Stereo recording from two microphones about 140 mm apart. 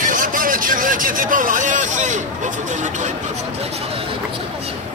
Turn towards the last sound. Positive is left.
turn(degrees=-60)  # may be behind; listen again after turning